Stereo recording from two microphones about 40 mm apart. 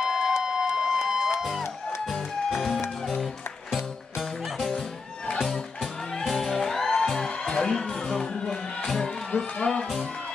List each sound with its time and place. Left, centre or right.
0.0 s a sound: centre
2.5 s music: centre
6.2 s music: centre